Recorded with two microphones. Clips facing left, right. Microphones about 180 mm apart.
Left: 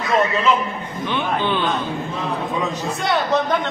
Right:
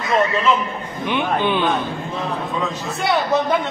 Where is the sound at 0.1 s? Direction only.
Centre (ahead or behind).